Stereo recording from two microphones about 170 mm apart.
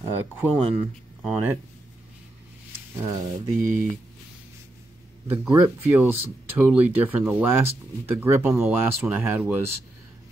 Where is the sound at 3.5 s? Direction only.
50° right (ahead or behind).